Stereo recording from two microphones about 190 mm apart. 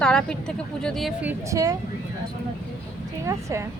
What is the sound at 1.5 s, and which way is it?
Speech, 20° right (ahead or behind).